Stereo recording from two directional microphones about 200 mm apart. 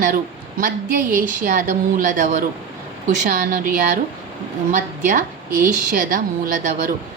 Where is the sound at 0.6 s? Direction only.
40° right (ahead or behind).